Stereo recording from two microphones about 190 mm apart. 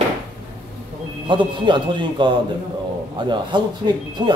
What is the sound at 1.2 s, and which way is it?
Speech, 25° right (ahead or behind).